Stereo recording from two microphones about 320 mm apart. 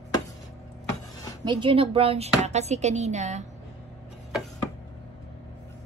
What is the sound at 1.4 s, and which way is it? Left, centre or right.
Speech, centre.